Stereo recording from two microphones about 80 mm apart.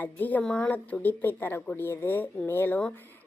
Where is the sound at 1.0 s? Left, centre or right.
Left.